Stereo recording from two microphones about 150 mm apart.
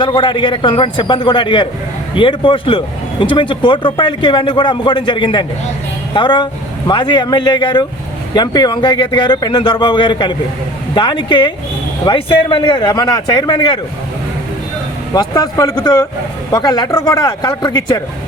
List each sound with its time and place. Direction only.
0.0 s speech: 35° left (ahead or behind)
15.1 s speech: 25° left (ahead or behind)